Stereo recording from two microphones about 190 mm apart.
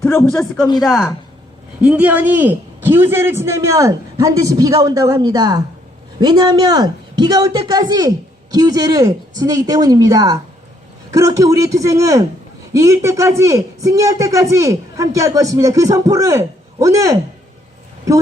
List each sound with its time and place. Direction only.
0.0 s speech: 15° left (ahead or behind)
0.8 s a man's voice: centre (ahead or behind); by 17.2 s 15° right (ahead or behind)